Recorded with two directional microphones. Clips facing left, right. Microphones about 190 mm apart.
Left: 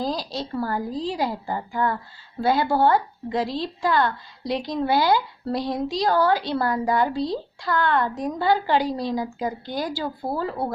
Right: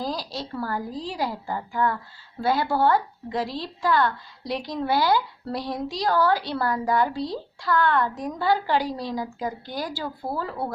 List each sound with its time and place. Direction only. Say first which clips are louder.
0.0 s a woman's voice: left 3 dB; 20° left (ahead or behind)